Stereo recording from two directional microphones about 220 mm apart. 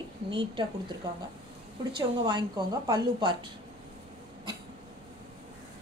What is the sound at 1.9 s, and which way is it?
A woman's voice, 20° right (ahead or behind).